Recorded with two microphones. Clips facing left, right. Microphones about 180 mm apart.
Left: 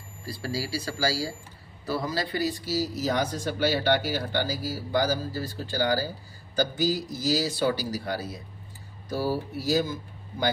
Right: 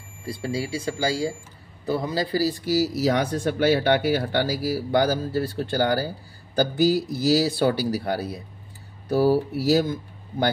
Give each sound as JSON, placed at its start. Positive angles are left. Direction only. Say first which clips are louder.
{"t": 0.2, "sound": "speech", "louder": "right 4 dB", "side_deg": -25}
{"t": 2.6, "sound": "speech", "louder": "right 6 dB", "side_deg": -80}